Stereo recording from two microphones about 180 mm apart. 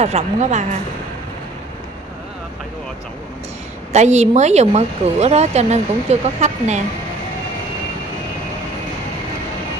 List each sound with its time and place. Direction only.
0.0 s speech: 40° right (ahead or behind)
3.9 s speech: 40° right (ahead or behind)